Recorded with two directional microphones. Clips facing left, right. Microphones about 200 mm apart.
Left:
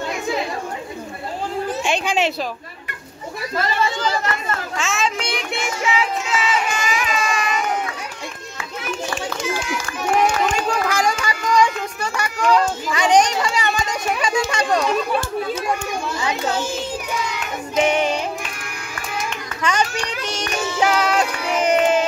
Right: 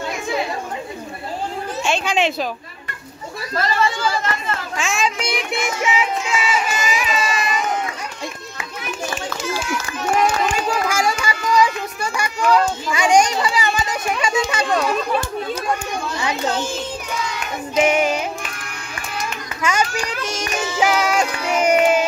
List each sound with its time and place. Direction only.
1.8 s a sound: 15° left (ahead or behind)
4.5 s children playing: 15° right (ahead or behind)
5.2 s child singing: 30° left (ahead or behind)
5.6 s child singing: 15° right (ahead or behind)
9.5 s run: 15° left (ahead or behind)
10.5 s run: 10° right (ahead or behind)
11.2 s music: 5° right (ahead or behind)
12.2 s a sound: 5° right (ahead or behind)
14.2 s speech: 5° right (ahead or behind)
17.7 s child singing: 5° right (ahead or behind)
19.6 s child singing: 5° right (ahead or behind)